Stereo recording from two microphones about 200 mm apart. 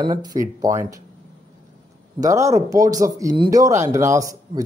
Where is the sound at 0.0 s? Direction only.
20° right (ahead or behind).